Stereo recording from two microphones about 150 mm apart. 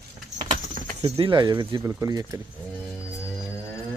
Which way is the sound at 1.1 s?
35° right (ahead or behind).